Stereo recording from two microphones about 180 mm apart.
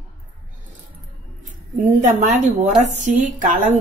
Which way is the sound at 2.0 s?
40° right (ahead or behind).